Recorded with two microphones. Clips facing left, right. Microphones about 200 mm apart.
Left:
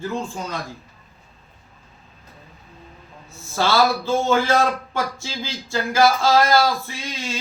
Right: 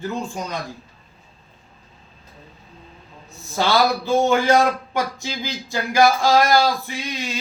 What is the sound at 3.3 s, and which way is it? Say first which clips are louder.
A man's voice: even; 15° right (ahead or behind).